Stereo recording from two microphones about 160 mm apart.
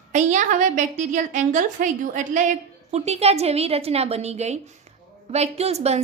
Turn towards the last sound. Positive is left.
turn(degrees=-40)  # may be behind; listen again after turning